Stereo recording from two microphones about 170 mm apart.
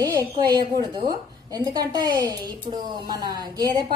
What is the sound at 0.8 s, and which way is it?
A woman's voice, 25° right (ahead or behind).